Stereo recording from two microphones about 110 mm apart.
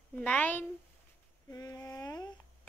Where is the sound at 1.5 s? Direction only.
30° left (ahead or behind).